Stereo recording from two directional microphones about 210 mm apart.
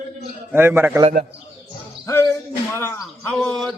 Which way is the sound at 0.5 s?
10° right (ahead or behind).